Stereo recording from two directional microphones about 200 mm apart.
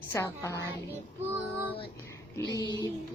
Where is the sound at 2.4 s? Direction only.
20° left (ahead or behind).